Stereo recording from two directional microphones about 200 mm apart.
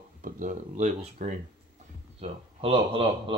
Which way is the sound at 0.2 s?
40° right (ahead or behind).